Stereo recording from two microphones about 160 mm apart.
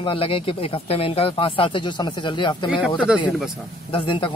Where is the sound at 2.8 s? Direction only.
5° right (ahead or behind).